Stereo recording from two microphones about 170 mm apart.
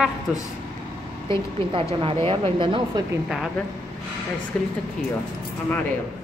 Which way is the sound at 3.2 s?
Centre (ahead or behind).